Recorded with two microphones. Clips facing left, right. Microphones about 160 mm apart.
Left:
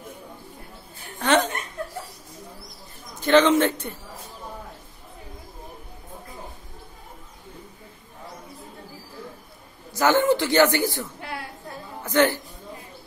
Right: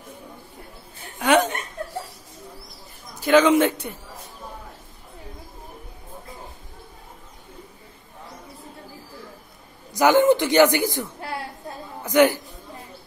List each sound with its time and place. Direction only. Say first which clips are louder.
0.9 s a sound: right 2 dB; 10° right (ahead or behind)
3.2 s speech: right 1 dB; 10° right (ahead or behind)
9.9 s a woman's voice: right 3 dB; 15° right (ahead or behind)